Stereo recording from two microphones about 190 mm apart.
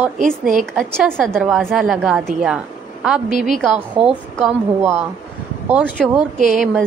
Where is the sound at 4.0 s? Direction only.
5° right (ahead or behind).